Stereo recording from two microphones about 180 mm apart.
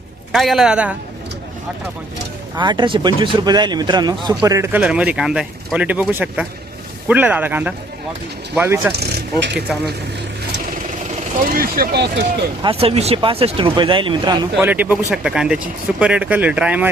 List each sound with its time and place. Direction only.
0.3 s speech: centre (ahead or behind)
2.6 s speech: 25° right (ahead or behind); by 8.9 s 10° right (ahead or behind)
8.9 s speech: 65° right (ahead or behind)
11.5 s speech: 55° right (ahead or behind)
12.6 s speech: 35° right (ahead or behind)
14.6 s speech: 10° right (ahead or behind)